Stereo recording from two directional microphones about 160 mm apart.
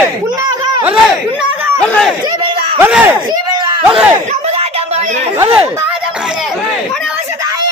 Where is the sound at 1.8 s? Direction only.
5° left (ahead or behind).